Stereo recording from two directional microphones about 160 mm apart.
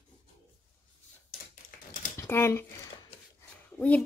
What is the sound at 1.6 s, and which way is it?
Typing, 55° left (ahead or behind).